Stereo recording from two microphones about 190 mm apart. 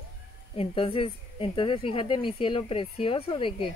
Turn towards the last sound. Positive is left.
turn(degrees=30)  # may be behind; listen again after turning